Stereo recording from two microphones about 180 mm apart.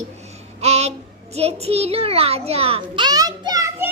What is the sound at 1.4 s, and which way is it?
A child's voice, 35° right (ahead or behind).